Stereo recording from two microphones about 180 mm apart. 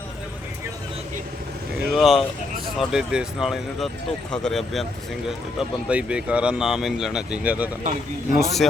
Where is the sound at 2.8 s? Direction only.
5° right (ahead or behind).